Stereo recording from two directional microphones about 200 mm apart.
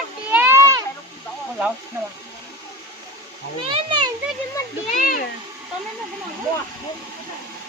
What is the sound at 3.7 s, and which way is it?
Speech, 25° right (ahead or behind).